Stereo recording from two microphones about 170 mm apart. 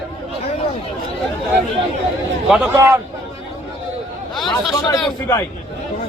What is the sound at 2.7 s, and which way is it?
Speech, 15° right (ahead or behind).